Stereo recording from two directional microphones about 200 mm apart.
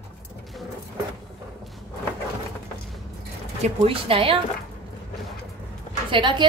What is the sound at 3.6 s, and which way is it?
Speech, 30° right (ahead or behind).